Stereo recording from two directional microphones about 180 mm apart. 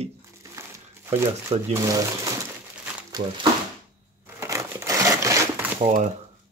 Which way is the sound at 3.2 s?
45° right (ahead or behind).